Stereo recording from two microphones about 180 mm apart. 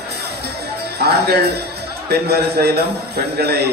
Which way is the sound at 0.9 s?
60° right (ahead or behind).